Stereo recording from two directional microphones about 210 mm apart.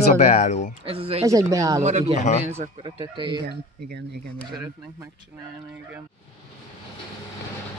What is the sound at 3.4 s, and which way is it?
Speech, 50° right (ahead or behind).